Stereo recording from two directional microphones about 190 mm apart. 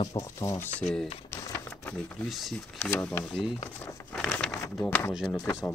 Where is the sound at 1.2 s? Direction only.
15° left (ahead or behind).